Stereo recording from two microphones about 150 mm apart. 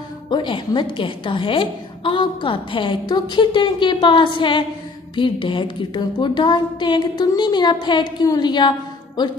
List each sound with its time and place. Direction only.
0.3 s a woman's voice: 30° left (ahead or behind)